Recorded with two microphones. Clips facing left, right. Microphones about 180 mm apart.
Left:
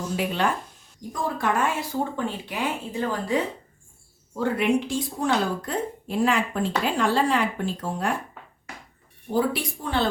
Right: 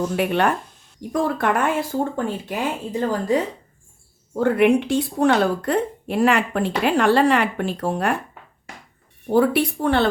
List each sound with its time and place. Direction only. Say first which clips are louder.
0.2 s speech: right 4 dB; 60° right (ahead or behind); by 3.4 s 45° right (ahead or behind)
4.4 s speech: right 6 dB; 55° right (ahead or behind)
9.3 s speech: right 7 dB; 65° right (ahead or behind)